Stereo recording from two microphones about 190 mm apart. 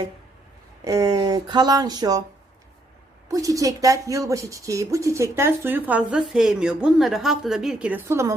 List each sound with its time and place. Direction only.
0.9 s speech: 20° right (ahead or behind)
3.2 s speech: 15° right (ahead or behind)